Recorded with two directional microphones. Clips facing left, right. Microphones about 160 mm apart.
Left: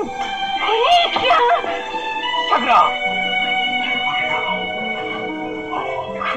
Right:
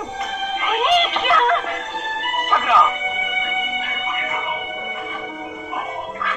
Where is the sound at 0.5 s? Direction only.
15° left (ahead or behind).